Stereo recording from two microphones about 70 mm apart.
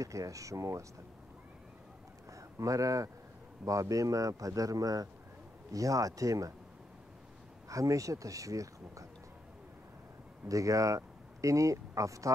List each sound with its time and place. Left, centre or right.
0.0 s speech: right
2.3 s a man's voice: right
7.6 s speech: right
10.5 s speech: right